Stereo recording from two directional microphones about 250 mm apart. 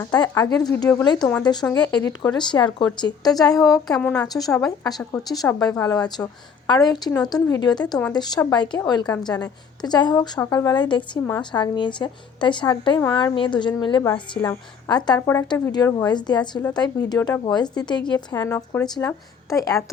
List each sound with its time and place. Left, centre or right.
0.0 s a woman's voice: centre
3.9 s a woman's voice: centre
4.3 s a woman's voice: centre